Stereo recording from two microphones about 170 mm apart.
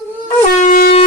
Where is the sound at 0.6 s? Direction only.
55° left (ahead or behind).